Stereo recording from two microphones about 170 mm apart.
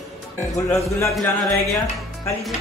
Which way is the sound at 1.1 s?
Centre (ahead or behind).